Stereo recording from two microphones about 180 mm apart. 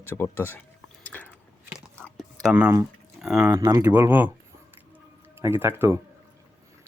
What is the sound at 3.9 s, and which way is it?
Speech, 10° right (ahead or behind).